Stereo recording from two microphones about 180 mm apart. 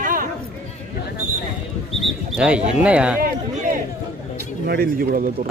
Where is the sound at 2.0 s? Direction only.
5° right (ahead or behind).